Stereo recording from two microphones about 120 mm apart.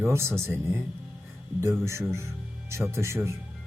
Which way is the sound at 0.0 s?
20° right (ahead or behind).